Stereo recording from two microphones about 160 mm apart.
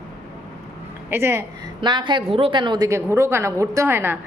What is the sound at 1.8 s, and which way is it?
A woman's voice, 30° right (ahead or behind).